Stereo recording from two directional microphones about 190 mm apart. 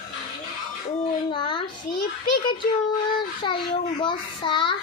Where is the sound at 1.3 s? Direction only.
25° left (ahead or behind).